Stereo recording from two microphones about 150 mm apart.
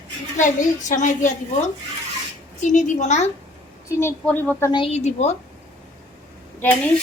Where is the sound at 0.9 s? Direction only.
55° left (ahead or behind).